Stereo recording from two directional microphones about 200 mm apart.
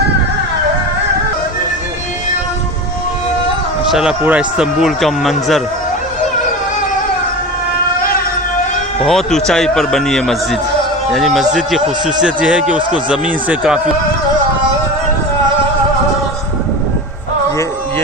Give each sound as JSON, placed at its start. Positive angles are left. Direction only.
{"t": 3.9, "sound": "speech", "side_deg": -5}
{"t": 9.0, "sound": "speech", "side_deg": 0}